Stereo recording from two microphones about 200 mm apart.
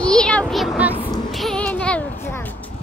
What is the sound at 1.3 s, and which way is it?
Music, 5° left (ahead or behind).